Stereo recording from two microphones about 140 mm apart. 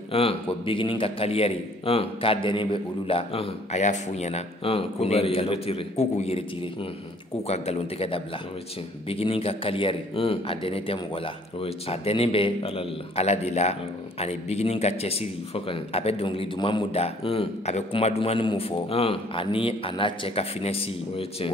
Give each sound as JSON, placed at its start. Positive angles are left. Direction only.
{"t": 0.1, "sound": "a man's voice", "side_deg": 40}
{"t": 7.4, "sound": "a man's voice", "side_deg": 50}